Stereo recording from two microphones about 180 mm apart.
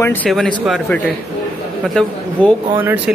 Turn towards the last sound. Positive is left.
turn(degrees=-10)  # may be behind; listen again after turning